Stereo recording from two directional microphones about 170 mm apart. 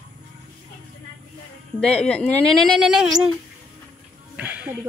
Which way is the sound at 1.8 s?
5° left (ahead or behind).